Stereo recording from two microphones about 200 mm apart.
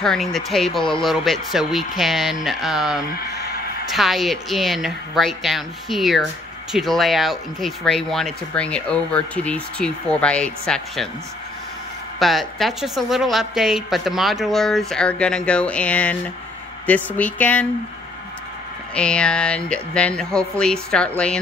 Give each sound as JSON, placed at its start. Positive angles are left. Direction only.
{"t": 0.0, "sound": "speech", "side_deg": 0}
{"t": 12.2, "sound": "speech", "side_deg": 0}
{"t": 18.9, "sound": "speech", "side_deg": 5}